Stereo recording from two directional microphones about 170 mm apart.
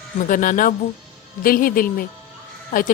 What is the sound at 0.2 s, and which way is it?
A woman's voice, 50° left (ahead or behind).